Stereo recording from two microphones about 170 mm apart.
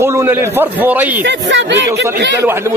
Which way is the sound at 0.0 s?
15° right (ahead or behind).